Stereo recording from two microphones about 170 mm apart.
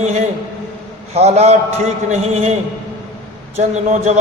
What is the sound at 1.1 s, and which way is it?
A man's voice, 40° right (ahead or behind).